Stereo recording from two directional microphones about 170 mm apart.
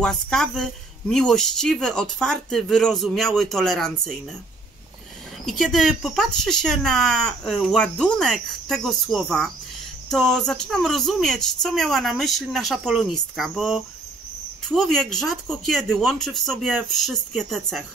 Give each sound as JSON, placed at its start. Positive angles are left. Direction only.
{"t": 0.0, "sound": "speech", "side_deg": 5}
{"t": 5.4, "sound": "speech", "side_deg": 0}